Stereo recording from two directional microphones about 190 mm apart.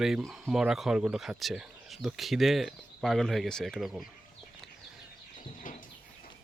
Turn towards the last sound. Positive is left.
turn(degrees=45)  # may be behind; listen again after turning